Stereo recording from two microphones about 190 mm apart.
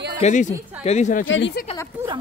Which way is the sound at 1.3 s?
70° left (ahead or behind).